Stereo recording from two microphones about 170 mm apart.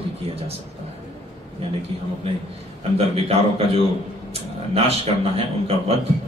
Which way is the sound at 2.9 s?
35° right (ahead or behind).